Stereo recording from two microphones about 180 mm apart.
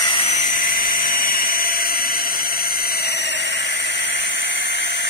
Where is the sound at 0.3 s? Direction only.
50° left (ahead or behind); by 3.5 s 70° left (ahead or behind).